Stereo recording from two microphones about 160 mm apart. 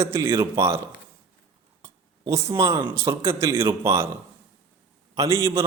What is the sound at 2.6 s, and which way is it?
Speech, 25° right (ahead or behind).